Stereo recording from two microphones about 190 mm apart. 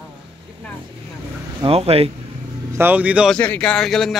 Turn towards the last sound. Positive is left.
turn(degrees=0)  # may be behind; listen again after turning